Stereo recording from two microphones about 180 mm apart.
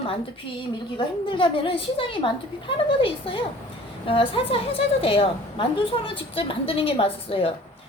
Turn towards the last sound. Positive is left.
turn(degrees=30)  # may be behind; listen again after turning